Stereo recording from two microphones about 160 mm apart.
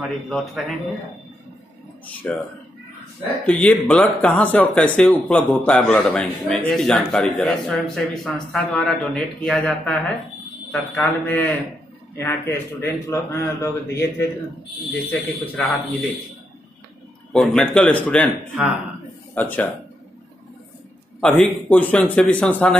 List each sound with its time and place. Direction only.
0.0 s speech: 5° left (ahead or behind)
2.3 s a man's voice: 5° left (ahead or behind)
3.4 s a man's voice: 10° left (ahead or behind)
11.2 s a man's voice: 10° left (ahead or behind)
17.3 s speech: 5° left (ahead or behind)
19.3 s a man's voice: 10° left (ahead or behind)
21.2 s a man's voice: 10° left (ahead or behind)